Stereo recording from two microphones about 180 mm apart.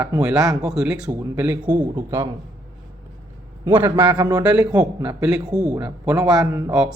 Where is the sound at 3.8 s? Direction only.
10° right (ahead or behind).